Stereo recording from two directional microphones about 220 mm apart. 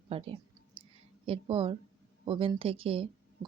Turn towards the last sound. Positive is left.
turn(degrees=-25)  # may be behind; listen again after turning